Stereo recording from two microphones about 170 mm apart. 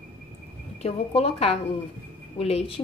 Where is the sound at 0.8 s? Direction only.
35° left (ahead or behind).